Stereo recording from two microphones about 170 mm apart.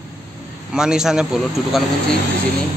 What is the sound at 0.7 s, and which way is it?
A man's voice, 5° right (ahead or behind).